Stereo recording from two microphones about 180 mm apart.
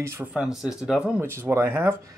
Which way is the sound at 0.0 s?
10° right (ahead or behind).